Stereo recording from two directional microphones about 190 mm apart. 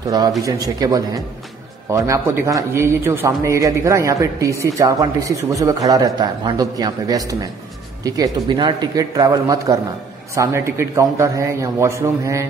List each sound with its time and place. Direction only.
0.1 s a man's voice: 20° right (ahead or behind)